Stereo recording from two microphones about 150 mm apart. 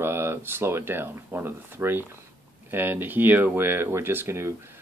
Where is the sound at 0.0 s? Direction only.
15° right (ahead or behind).